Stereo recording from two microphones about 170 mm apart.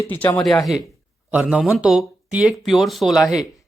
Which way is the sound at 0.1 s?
10° left (ahead or behind).